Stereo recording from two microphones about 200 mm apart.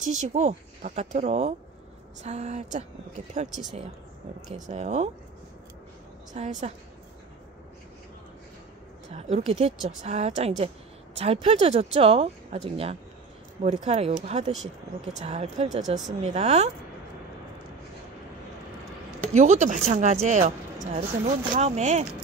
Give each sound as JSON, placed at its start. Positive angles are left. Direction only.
{"t": 0.0, "sound": "speech", "side_deg": -35}
{"t": 4.6, "sound": "speech", "side_deg": -35}
{"t": 6.4, "sound": "speech", "side_deg": -35}
{"t": 9.1, "sound": "speech", "side_deg": -30}
{"t": 19.2, "sound": "speech", "side_deg": -35}